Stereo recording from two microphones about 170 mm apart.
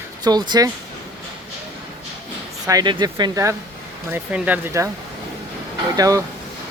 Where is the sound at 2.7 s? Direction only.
20° right (ahead or behind).